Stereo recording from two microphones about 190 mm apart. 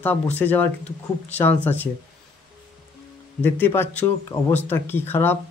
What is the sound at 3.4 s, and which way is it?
Speech, 10° left (ahead or behind).